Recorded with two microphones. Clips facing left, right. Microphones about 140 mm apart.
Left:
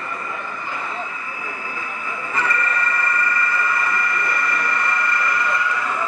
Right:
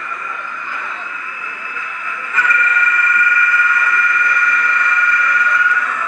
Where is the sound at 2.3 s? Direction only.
30° left (ahead or behind).